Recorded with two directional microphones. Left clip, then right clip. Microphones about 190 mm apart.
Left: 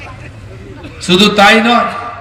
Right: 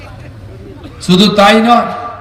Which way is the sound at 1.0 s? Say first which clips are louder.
Left 1 dB; 60° right (ahead or behind).